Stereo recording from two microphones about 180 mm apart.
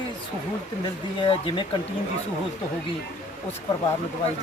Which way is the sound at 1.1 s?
25° left (ahead or behind).